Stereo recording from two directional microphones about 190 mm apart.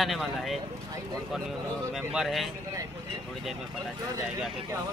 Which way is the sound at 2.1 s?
Centre (ahead or behind).